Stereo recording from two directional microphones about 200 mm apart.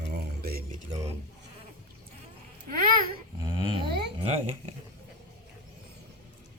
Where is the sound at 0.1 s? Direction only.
50° right (ahead or behind).